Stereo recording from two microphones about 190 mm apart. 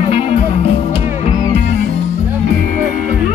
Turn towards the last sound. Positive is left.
turn(degrees=35)  # may be behind; listen again after turning